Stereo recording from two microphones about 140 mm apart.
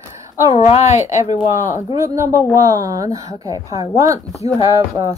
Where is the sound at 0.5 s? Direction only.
50° left (ahead or behind).